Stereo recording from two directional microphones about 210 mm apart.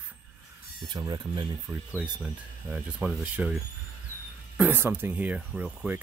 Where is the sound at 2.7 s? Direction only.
5° right (ahead or behind).